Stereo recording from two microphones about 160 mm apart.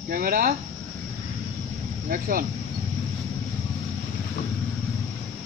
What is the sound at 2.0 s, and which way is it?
Speech, 65° right (ahead or behind).